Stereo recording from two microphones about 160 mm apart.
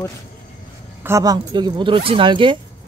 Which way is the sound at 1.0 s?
20° right (ahead or behind).